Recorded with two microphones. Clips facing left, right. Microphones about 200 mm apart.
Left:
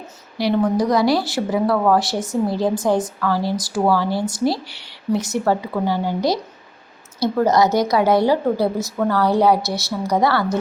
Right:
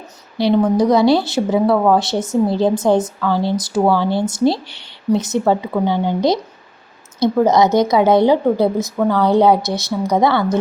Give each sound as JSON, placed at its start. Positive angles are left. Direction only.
{"t": 0.8, "sound": "a woman's voice", "side_deg": -25}